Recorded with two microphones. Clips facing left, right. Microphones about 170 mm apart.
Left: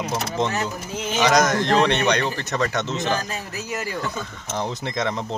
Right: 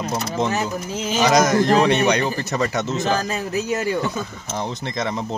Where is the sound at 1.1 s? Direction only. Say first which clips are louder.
Right 2 dB; 5° right (ahead or behind).